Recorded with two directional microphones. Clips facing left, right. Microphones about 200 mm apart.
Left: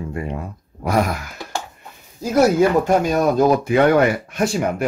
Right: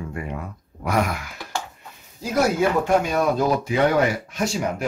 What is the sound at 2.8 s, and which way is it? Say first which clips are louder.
Speech: left 3 dB; 40° left (ahead or behind).